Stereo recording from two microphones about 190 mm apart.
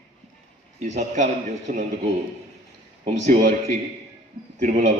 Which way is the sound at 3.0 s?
45° right (ahead or behind).